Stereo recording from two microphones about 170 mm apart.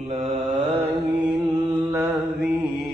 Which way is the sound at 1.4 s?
25° right (ahead or behind).